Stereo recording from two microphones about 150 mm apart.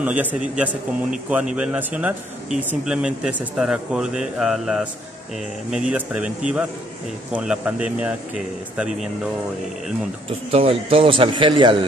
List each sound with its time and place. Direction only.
0.0 s speech: 10° right (ahead or behind)
10.5 s a man's voice: 40° right (ahead or behind)